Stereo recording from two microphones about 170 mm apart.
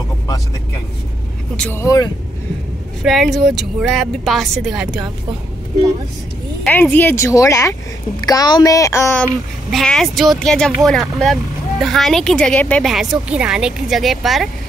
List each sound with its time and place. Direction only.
1.6 s speech: 15° left (ahead or behind)
3.0 s speech: centre (ahead or behind)
6.6 s speech: 10° left (ahead or behind)
9.7 s speech: centre (ahead or behind)